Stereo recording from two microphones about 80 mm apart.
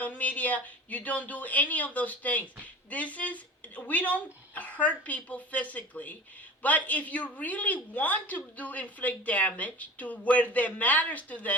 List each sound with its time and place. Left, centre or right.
0.0 s a woman's voice: centre